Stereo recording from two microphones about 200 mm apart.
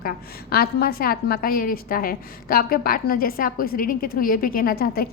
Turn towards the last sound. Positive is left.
turn(degrees=50)  # may be behind; listen again after turning